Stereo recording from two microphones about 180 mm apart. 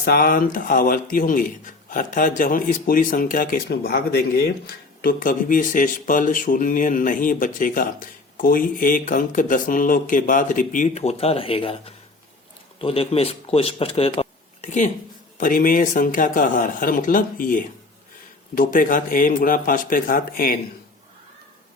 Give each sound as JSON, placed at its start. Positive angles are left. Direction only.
{"t": 0.0, "sound": "speech", "side_deg": 55}